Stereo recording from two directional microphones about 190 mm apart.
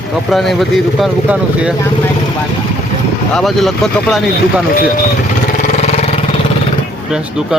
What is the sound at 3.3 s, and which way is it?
Speech, centre (ahead or behind).